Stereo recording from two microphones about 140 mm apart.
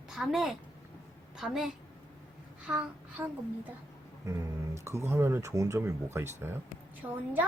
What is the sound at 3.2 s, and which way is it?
A child's voice, 20° right (ahead or behind).